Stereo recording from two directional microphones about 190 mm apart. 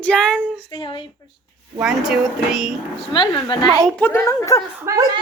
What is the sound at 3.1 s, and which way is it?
Speech, 25° left (ahead or behind).